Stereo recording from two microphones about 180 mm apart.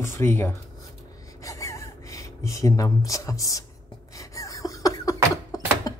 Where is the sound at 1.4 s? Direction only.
15° left (ahead or behind).